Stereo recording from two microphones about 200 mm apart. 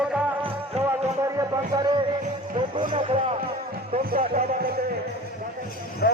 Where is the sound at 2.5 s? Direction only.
25° right (ahead or behind).